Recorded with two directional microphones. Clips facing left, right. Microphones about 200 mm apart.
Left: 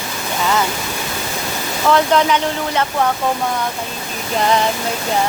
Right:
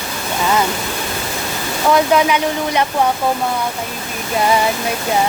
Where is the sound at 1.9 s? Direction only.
10° right (ahead or behind).